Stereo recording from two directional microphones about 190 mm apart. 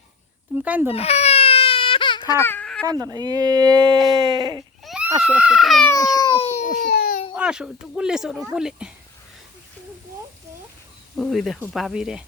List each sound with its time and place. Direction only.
0.5 s speech: 10° right (ahead or behind)
0.9 s baby cry: 35° left (ahead or behind); by 2.8 s 5° left (ahead or behind)
2.8 s speech: 20° right (ahead or behind)
4.8 s a sound: 5° right (ahead or behind)
5.2 s speech: 5° right (ahead or behind)
5.9 s speech: 20° left (ahead or behind)
6.7 s baby cry: 50° left (ahead or behind)
7.3 s speech: 5° right (ahead or behind)
11.2 s speech: centre (ahead or behind)